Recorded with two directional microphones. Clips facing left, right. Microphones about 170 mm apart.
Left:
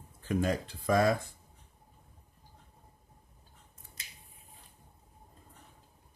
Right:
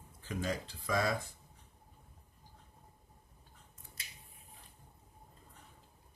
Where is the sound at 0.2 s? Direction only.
55° left (ahead or behind).